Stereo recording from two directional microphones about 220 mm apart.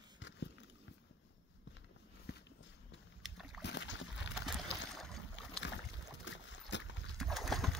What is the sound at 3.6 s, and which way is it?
Boat, 55° left (ahead or behind).